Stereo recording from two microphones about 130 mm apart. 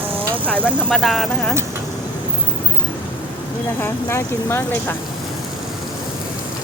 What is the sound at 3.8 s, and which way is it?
Speech, 20° left (ahead or behind).